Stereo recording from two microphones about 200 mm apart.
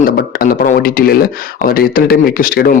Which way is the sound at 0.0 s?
45° left (ahead or behind).